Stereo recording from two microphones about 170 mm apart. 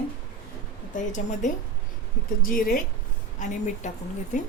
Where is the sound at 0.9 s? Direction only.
45° left (ahead or behind).